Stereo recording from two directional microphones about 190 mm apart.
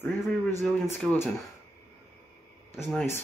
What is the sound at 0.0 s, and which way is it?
Speech, 10° left (ahead or behind).